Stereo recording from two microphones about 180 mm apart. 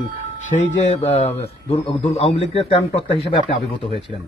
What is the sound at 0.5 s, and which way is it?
A man's voice, 30° left (ahead or behind).